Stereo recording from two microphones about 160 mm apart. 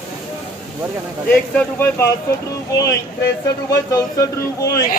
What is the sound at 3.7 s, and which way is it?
Speech, 20° left (ahead or behind).